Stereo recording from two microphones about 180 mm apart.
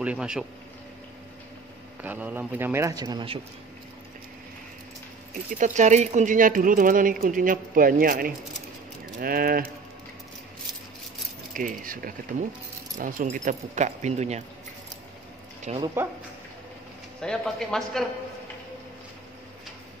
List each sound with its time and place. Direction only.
0.0 s speech: 5° right (ahead or behind)
2.0 s speech: 10° right (ahead or behind)
5.6 s a woman's voice: 40° right (ahead or behind)
11.5 s a woman's voice: 50° right (ahead or behind)
15.8 s speech: 15° right (ahead or behind)
17.2 s speech: 5° left (ahead or behind)